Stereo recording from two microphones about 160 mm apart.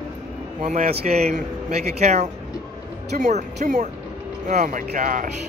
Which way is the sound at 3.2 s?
50° right (ahead or behind).